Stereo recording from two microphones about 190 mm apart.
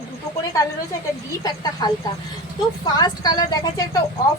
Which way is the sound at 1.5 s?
20° left (ahead or behind).